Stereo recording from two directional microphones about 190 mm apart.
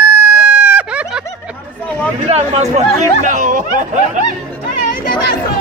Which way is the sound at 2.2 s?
35° right (ahead or behind).